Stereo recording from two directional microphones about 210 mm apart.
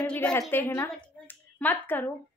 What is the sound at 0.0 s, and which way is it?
A woman's voice, 5° left (ahead or behind).